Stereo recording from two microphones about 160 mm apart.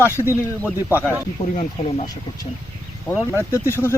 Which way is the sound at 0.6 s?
15° left (ahead or behind).